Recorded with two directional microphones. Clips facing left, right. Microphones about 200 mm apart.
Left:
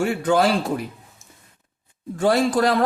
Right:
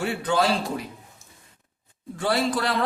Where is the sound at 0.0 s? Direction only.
50° left (ahead or behind).